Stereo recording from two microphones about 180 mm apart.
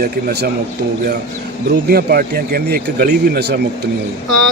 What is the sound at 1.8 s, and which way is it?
Speech, 60° right (ahead or behind).